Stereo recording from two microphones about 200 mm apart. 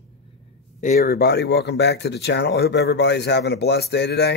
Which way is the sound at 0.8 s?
45° left (ahead or behind).